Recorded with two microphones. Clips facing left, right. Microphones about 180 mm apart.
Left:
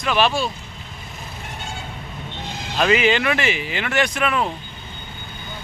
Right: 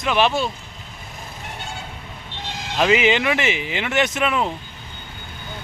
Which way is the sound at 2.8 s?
20° right (ahead or behind).